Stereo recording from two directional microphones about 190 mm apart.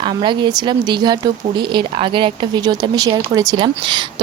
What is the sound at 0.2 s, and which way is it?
Speech, 25° right (ahead or behind).